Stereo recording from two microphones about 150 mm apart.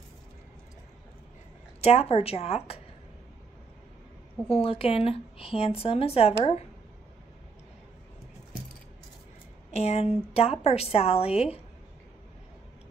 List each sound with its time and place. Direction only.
1.8 s speech: 45° left (ahead or behind)
4.5 s a woman's voice: 40° left (ahead or behind)
9.7 s speech: 45° left (ahead or behind)